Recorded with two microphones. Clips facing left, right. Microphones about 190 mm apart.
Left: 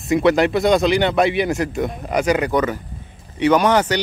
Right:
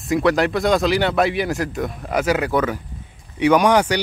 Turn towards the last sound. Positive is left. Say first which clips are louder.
# even
turn(degrees=-10)  # may be behind; listen again after turning